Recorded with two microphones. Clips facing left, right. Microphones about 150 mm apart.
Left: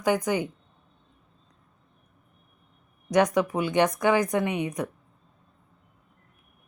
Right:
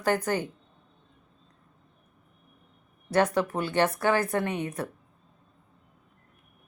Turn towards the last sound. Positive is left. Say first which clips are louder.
# left 2 dB
turn(degrees=15)  # may be behind; listen again after turning